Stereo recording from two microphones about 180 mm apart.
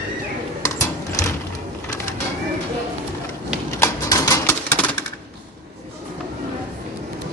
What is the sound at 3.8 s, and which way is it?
Typewriter, 20° left (ahead or behind).